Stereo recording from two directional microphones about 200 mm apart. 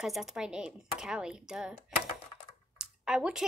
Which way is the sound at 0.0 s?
Centre (ahead or behind).